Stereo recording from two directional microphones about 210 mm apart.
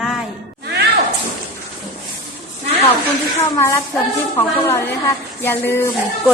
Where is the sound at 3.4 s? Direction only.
15° left (ahead or behind).